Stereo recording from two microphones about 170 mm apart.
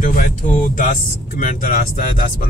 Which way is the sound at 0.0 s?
50° left (ahead or behind).